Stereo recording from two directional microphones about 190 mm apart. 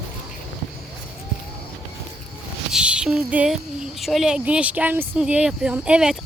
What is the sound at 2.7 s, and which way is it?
Speech, 5° right (ahead or behind).